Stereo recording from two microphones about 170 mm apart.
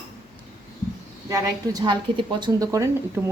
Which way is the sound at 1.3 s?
25° right (ahead or behind).